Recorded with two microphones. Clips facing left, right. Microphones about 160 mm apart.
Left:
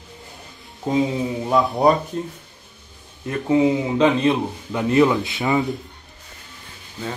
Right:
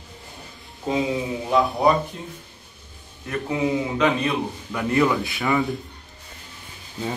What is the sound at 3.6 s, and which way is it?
A man's voice, 25° left (ahead or behind).